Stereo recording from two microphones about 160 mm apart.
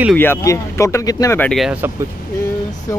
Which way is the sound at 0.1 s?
15° left (ahead or behind).